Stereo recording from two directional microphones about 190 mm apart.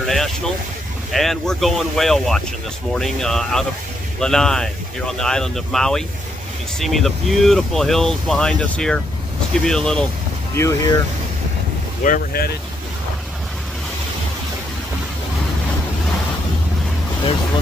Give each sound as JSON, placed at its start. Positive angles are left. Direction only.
{"t": 0.0, "sound": "vehicle", "side_deg": 0}
{"t": 1.1, "sound": "speech", "side_deg": 0}
{"t": 10.5, "sound": "speech", "side_deg": 15}
{"t": 12.0, "sound": "speech", "side_deg": 50}